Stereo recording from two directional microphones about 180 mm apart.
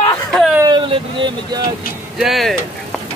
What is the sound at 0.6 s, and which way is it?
Vehicle, 25° right (ahead or behind).